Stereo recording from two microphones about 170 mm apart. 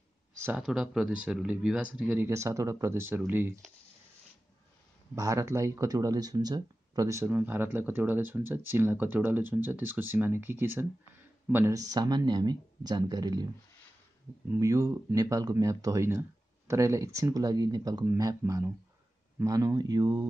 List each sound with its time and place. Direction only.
0.4 s speech: 5° right (ahead or behind)
5.1 s speech: 20° right (ahead or behind)
14.5 s speech: 20° right (ahead or behind)